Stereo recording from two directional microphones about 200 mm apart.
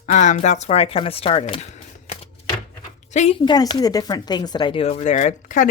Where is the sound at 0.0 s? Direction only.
35° left (ahead or behind).